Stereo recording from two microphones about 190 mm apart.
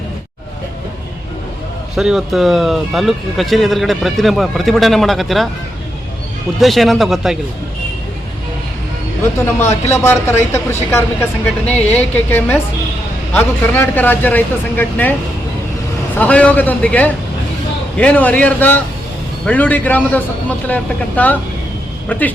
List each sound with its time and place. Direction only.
2.0 s speech: centre (ahead or behind)
6.6 s speech: centre (ahead or behind)
9.6 s speech: 35° left (ahead or behind)
9.9 s speech: 10° left (ahead or behind)
16.1 s speech: 5° left (ahead or behind)